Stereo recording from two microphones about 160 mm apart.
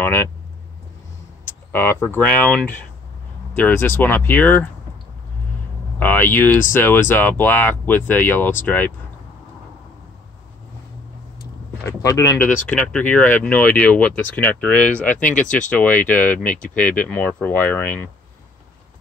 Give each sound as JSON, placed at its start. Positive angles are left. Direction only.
{"t": 0.0, "sound": "speech", "side_deg": 15}
{"t": 1.7, "sound": "speech", "side_deg": 15}
{"t": 5.9, "sound": "speech", "side_deg": 10}
{"t": 11.8, "sound": "speech", "side_deg": 20}
{"t": 16.4, "sound": "speech", "side_deg": 55}
{"t": 16.7, "sound": "speech", "side_deg": 10}